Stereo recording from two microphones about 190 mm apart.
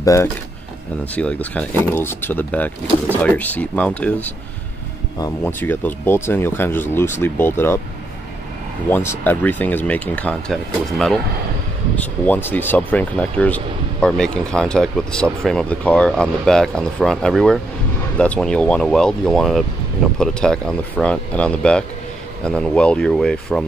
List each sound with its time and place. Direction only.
0.0 s speech: 15° left (ahead or behind)
5.4 s speech: 10° left (ahead or behind)
8.9 s speech: 10° left (ahead or behind)